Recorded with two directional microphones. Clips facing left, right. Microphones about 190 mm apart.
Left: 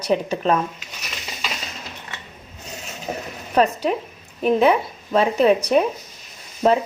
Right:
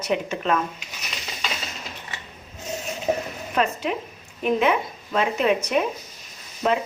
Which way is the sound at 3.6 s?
35° left (ahead or behind).